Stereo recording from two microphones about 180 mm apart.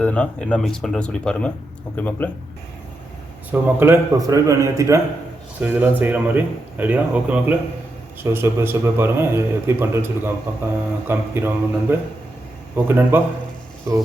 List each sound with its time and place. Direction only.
0.0 s speech: 5° left (ahead or behind)
3.5 s a man's voice: 10° right (ahead or behind)